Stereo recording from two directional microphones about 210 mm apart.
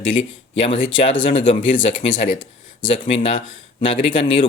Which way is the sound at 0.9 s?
25° left (ahead or behind).